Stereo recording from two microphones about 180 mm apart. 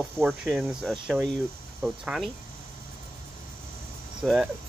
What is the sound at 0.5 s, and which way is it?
Speech, centre (ahead or behind).